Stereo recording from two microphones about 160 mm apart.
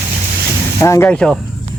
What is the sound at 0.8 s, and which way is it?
Speech, 15° left (ahead or behind).